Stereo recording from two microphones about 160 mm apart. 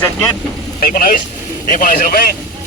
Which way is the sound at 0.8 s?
60° left (ahead or behind).